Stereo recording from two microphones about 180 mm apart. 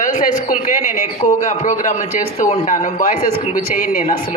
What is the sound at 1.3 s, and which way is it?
A woman's voice, 40° left (ahead or behind).